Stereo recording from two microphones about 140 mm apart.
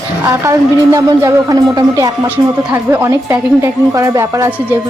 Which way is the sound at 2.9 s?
20° right (ahead or behind).